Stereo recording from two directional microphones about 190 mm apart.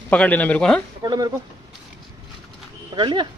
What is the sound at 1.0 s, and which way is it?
Speech, 20° right (ahead or behind).